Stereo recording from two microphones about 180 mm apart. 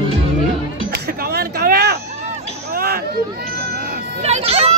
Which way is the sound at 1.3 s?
65° right (ahead or behind).